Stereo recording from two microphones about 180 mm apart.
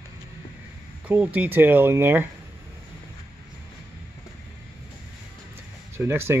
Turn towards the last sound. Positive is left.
turn(degrees=-15)  # may be behind; listen again after turning